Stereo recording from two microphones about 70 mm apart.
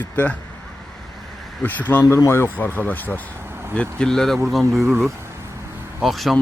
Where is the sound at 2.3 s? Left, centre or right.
Left.